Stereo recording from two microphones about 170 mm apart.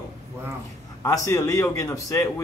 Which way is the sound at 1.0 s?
20° left (ahead or behind).